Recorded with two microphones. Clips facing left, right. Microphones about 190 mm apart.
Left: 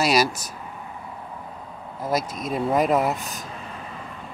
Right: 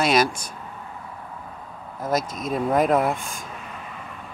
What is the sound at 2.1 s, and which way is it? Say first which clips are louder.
Speech: right 1 dB; 45° right (ahead or behind).